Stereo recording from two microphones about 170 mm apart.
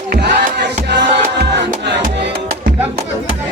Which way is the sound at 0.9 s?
80° right.